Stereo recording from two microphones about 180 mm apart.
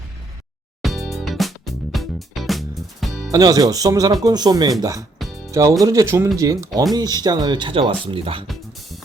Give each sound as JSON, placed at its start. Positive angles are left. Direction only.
{"t": 0.8, "sound": "music", "side_deg": 0}
{"t": 3.3, "sound": "speech", "side_deg": -20}